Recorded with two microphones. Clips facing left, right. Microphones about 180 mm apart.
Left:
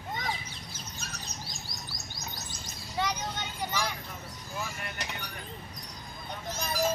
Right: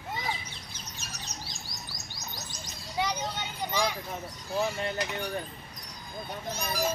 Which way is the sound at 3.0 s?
15° right (ahead or behind).